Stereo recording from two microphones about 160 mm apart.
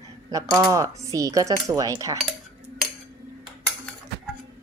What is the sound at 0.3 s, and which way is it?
Speech, 20° right (ahead or behind).